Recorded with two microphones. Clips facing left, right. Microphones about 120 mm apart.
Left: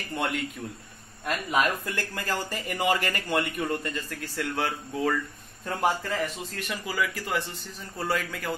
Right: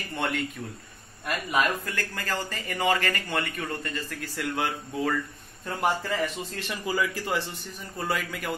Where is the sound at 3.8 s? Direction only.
5° right (ahead or behind).